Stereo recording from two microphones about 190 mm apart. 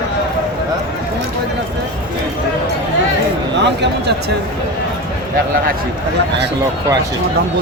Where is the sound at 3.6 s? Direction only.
65° right (ahead or behind).